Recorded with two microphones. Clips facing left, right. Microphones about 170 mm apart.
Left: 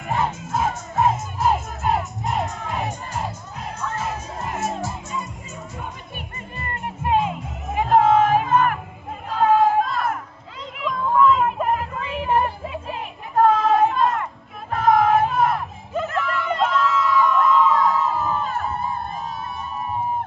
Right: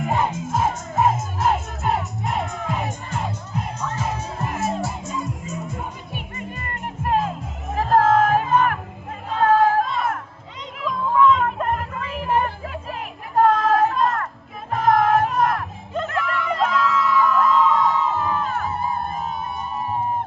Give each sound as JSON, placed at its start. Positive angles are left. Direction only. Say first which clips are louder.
{"t": 0.0, "sound": "music", "louder": "right 2 dB", "side_deg": -5}
{"t": 3.8, "sound": "children shouting", "louder": "left 2 dB", "side_deg": 0}
{"t": 4.2, "sound": "music", "louder": "right 1 dB", "side_deg": -30}
{"t": 6.3, "sound": "music", "louder": "right 1 dB", "side_deg": 35}
{"t": 7.1, "sound": "music", "louder": "left 1 dB", "side_deg": 0}
{"t": 9.3, "sound": "crowd", "louder": "even", "side_deg": 0}
{"t": 10.8, "sound": "a sound", "louder": "even", "side_deg": 0}
{"t": 14.7, "sound": "music", "louder": "left 1 dB", "side_deg": 0}